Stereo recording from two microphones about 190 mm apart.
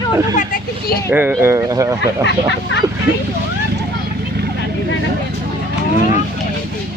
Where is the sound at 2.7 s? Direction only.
70° left (ahead or behind).